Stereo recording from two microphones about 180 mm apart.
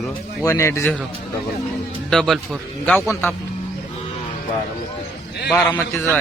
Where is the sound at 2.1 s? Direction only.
Centre (ahead or behind).